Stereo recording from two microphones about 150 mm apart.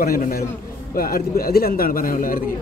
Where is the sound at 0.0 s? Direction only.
80° left.